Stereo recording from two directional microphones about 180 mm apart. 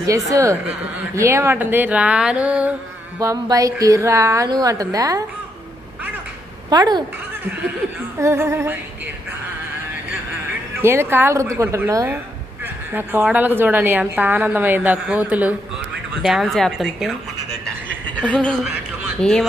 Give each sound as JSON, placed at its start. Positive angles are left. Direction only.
{"t": 0.3, "sound": "a woman's voice", "side_deg": -15}
{"t": 3.2, "sound": "a woman's voice", "side_deg": -20}
{"t": 6.7, "sound": "speech", "side_deg": -25}
{"t": 8.2, "sound": "a woman's voice", "side_deg": -15}
{"t": 10.8, "sound": "a woman's voice", "side_deg": -15}